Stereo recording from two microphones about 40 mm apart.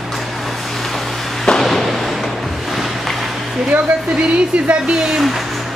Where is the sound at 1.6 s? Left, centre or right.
Centre.